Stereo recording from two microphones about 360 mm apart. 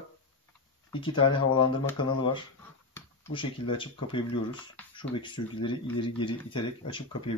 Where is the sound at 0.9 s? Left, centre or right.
Centre.